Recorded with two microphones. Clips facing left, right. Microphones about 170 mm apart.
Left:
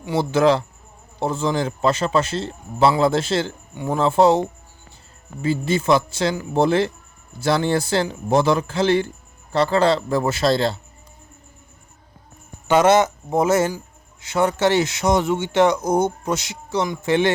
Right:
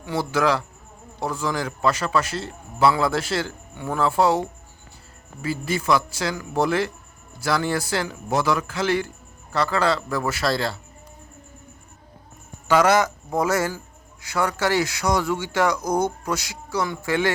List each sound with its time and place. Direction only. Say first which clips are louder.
0.0 s speech: left 5 dB; 20° left (ahead or behind)
12.6 s speech: left 3 dB; 25° left (ahead or behind)